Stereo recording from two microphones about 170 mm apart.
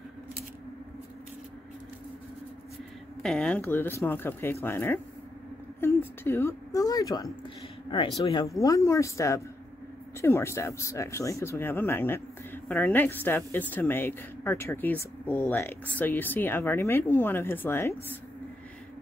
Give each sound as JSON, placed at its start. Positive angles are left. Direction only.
{"t": 3.2, "sound": "a woman's voice", "side_deg": 5}